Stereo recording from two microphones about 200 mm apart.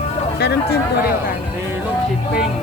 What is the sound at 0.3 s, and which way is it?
Speech, 55° left (ahead or behind).